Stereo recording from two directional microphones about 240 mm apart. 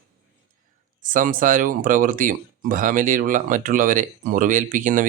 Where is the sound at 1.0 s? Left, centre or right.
Right.